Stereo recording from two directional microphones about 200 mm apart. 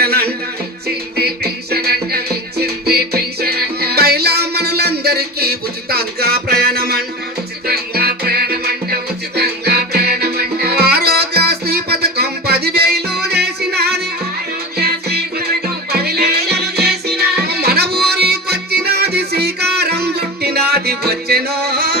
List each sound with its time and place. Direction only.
0.0 s music: 50° right (ahead or behind)